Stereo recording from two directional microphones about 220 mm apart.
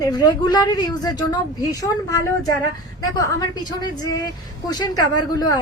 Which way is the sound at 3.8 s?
20° left (ahead or behind).